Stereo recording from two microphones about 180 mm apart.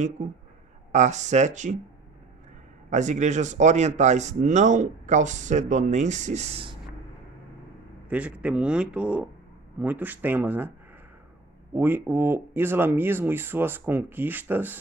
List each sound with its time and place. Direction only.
0.2 s speech: 45° right (ahead or behind)
2.9 s speech: 40° right (ahead or behind)
8.1 s speech: 5° right (ahead or behind)
11.7 s speech: 10° right (ahead or behind)